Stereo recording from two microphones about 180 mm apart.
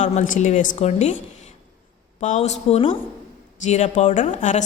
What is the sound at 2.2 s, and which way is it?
A woman's voice, 40° left (ahead or behind).